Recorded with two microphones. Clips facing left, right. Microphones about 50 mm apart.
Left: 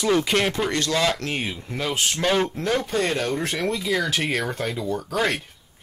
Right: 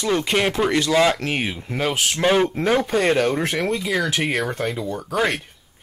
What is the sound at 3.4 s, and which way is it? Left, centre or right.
Speech, centre.